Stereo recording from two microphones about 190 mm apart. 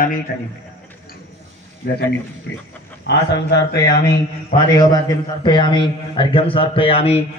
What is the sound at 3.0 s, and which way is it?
Speech, 65° left (ahead or behind).